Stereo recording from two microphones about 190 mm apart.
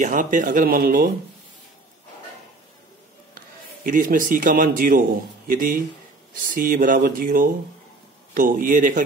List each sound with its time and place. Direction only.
0.0 s speech: 45° right (ahead or behind)
3.8 s speech: 45° right (ahead or behind)